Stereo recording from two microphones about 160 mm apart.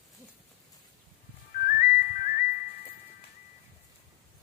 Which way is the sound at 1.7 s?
55° left (ahead or behind).